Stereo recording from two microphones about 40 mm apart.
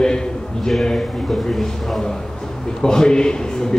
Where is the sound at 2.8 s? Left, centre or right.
Centre.